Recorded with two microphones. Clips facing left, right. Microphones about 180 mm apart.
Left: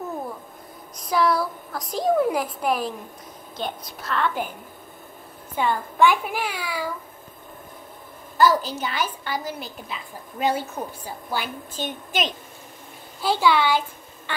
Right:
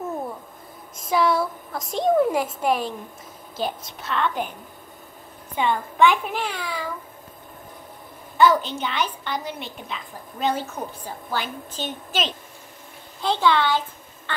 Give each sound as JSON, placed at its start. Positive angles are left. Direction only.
{"t": 1.0, "sound": "a woman's voice", "side_deg": 0}
{"t": 5.6, "sound": "a child's voice", "side_deg": 5}
{"t": 8.4, "sound": "a woman's voice", "side_deg": 0}